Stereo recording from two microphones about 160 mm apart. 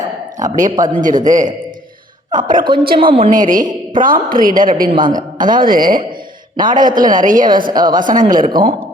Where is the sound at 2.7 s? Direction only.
30° right (ahead or behind).